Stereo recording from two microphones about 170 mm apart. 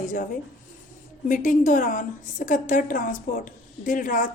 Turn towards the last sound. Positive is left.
turn(degrees=50)  # may be behind; listen again after turning